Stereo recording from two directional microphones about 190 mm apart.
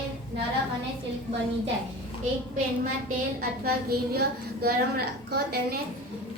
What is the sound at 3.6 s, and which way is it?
A woman's voice, 55° right (ahead or behind).